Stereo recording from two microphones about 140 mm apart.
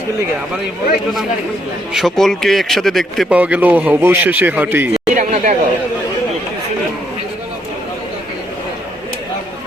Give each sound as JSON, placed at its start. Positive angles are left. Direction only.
{"t": 1.9, "sound": "a man's voice", "side_deg": 0}
{"t": 3.2, "sound": "speech", "side_deg": -10}
{"t": 5.1, "sound": "a sound", "side_deg": -55}